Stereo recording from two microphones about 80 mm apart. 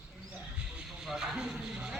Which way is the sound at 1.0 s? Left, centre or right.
Centre.